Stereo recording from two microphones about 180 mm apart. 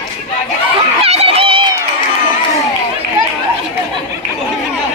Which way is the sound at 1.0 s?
35° right (ahead or behind).